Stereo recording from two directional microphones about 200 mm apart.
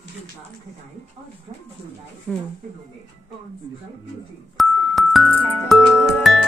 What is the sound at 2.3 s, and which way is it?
Speech, 5° left (ahead or behind).